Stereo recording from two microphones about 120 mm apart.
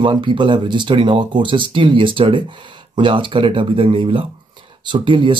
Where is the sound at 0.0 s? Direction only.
40° right (ahead or behind).